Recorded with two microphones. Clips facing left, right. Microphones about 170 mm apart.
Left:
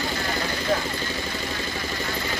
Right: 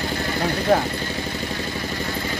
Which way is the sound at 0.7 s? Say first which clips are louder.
Right 7 dB; 60° right (ahead or behind).